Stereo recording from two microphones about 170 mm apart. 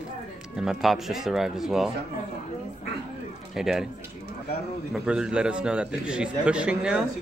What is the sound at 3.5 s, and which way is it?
Speech, 5° right (ahead or behind).